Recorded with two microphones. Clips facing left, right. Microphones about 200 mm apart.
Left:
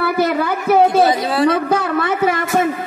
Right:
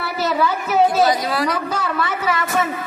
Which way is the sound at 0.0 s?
55° left (ahead or behind).